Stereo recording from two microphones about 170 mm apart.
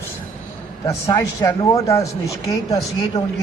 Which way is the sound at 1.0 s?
20° left (ahead or behind).